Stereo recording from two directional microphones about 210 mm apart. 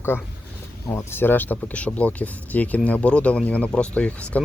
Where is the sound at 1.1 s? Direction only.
10° left (ahead or behind).